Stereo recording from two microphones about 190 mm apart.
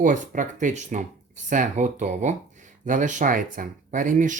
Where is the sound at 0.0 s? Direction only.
45° right (ahead or behind).